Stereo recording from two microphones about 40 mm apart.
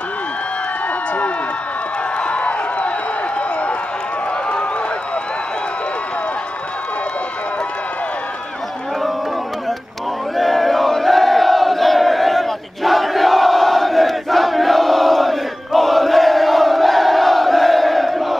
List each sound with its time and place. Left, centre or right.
2.1 s crowd: left
10.3 s battle cry: centre